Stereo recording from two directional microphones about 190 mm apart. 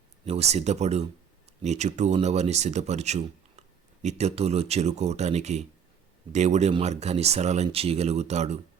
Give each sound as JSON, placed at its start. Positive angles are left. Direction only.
{"t": 0.3, "sound": "speech", "side_deg": -35}